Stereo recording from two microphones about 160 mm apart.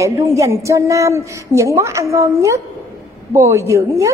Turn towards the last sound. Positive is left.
turn(degrees=-20)  # may be behind; listen again after turning